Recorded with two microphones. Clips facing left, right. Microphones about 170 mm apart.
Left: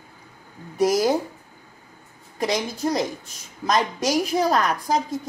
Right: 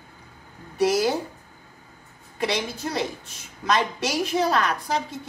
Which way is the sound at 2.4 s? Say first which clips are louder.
Left 3 dB; 40° left (ahead or behind).